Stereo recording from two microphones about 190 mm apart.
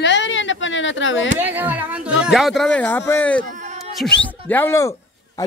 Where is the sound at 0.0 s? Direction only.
70° left (ahead or behind).